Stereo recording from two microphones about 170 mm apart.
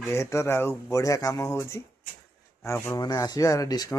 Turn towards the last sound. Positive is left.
turn(degrees=20)  # may be behind; listen again after turning